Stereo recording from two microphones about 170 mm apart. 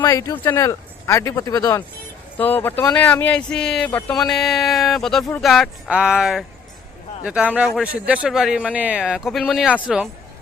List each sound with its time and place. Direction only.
0.0 s speech: 20° left (ahead or behind); by 10.1 s 5° right (ahead or behind)